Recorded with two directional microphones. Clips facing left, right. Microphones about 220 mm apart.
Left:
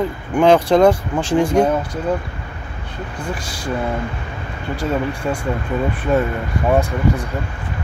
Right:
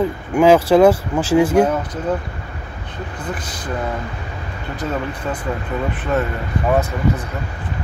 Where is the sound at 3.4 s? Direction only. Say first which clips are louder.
Left 2 dB; 10° left (ahead or behind).